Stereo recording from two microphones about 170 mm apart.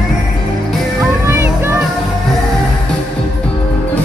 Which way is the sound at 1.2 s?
15° right (ahead or behind).